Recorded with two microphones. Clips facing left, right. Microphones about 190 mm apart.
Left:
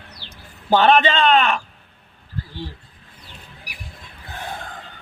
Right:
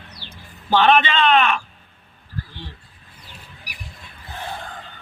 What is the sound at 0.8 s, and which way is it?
Speech, 40° left (ahead or behind).